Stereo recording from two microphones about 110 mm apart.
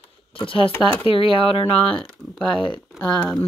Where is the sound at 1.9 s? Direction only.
5° left (ahead or behind).